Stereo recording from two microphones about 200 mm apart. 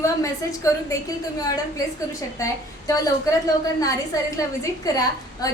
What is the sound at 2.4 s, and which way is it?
A woman's voice, 15° left (ahead or behind).